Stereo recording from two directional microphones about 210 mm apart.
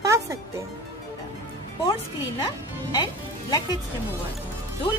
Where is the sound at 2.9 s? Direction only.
20° left (ahead or behind).